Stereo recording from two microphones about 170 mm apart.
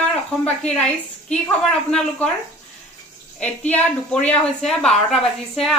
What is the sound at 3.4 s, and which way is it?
A woman's voice, 10° left (ahead or behind).